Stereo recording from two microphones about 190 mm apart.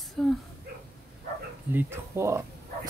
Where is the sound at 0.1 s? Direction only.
Centre (ahead or behind).